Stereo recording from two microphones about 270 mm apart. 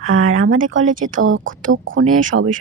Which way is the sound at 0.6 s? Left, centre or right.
Right.